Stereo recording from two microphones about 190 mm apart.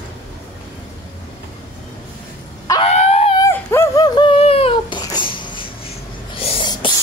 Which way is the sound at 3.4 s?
15° left (ahead or behind).